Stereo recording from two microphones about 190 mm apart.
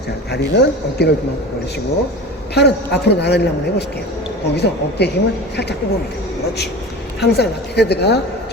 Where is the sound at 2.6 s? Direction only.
60° left (ahead or behind).